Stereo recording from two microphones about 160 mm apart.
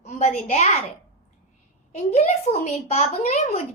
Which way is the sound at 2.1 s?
40° left (ahead or behind).